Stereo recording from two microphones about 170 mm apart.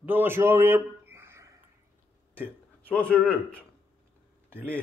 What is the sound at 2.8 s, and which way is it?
Speech, 5° left (ahead or behind).